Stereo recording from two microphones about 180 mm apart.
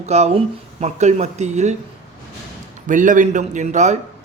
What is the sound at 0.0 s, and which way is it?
Speech, 35° right (ahead or behind).